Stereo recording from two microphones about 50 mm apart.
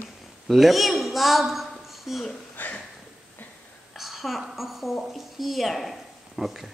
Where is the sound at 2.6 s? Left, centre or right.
Left.